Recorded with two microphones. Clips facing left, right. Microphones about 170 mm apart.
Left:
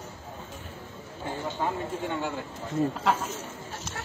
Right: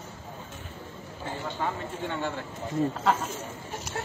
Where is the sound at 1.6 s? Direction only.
15° left (ahead or behind).